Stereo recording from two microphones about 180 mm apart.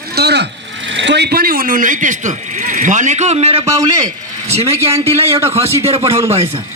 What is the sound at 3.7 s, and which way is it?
Speech, 20° right (ahead or behind).